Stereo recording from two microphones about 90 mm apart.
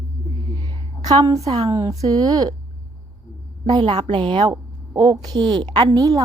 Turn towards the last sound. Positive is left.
turn(degrees=-40)  # may be behind; listen again after turning